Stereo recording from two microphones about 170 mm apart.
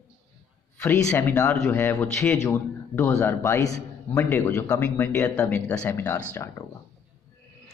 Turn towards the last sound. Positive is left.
turn(degrees=15)  # may be behind; listen again after turning